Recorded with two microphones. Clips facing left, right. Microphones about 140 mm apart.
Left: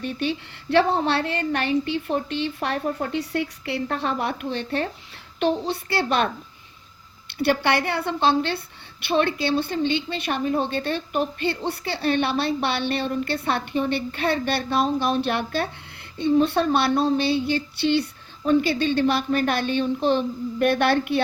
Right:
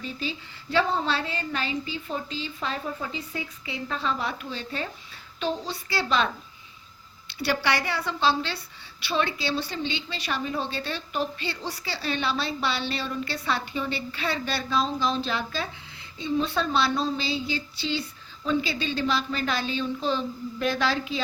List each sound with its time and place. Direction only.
0.0 s a woman's voice: 65° left (ahead or behind)
7.3 s a woman's voice: 55° left (ahead or behind)